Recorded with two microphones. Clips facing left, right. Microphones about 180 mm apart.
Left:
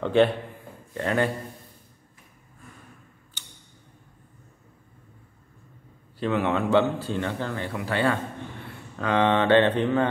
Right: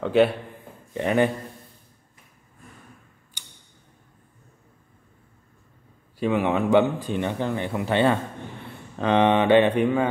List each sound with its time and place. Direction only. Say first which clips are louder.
0.0 s speech: right 1 dB; 5° right (ahead or behind)
0.9 s speech: right 3 dB; 20° right (ahead or behind)
3.4 s tick-tock: even; 15° right (ahead or behind)
6.1 s speech: right 2 dB; 15° right (ahead or behind)